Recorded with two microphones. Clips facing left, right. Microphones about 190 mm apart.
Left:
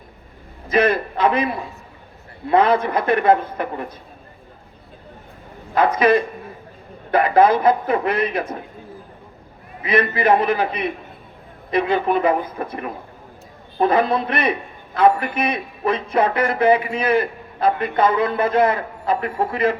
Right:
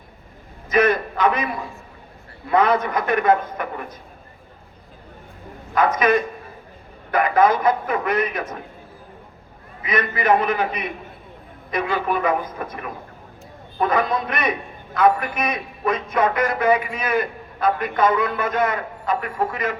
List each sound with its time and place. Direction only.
0.7 s a man's voice: 30° left (ahead or behind)
2.5 s a man's voice: 30° left (ahead or behind)
5.7 s a man's voice: 30° left (ahead or behind)
9.8 s a man's voice: 30° left (ahead or behind)